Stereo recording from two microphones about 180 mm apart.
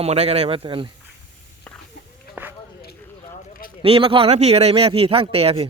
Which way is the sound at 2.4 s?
10° right (ahead or behind).